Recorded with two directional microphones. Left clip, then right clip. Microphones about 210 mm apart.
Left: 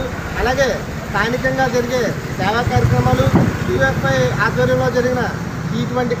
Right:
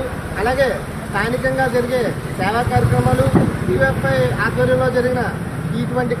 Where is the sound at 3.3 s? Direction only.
35° left (ahead or behind).